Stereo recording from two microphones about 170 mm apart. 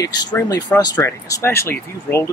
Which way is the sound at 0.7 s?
20° left (ahead or behind).